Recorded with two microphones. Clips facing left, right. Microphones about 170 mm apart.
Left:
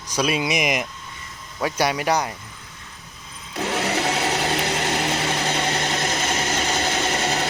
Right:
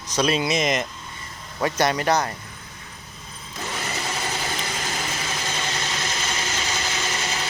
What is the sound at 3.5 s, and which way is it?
Blender, 70° left (ahead or behind).